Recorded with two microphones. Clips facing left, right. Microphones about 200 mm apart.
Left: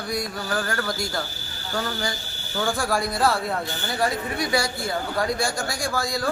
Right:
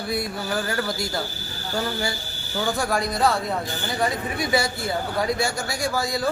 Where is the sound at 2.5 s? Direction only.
Centre (ahead or behind).